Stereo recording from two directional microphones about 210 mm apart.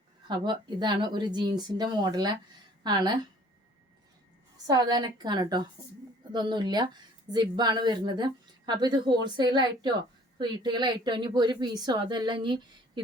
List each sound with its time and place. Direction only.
0.3 s speech: 20° right (ahead or behind)
4.5 s speech: 20° right (ahead or behind)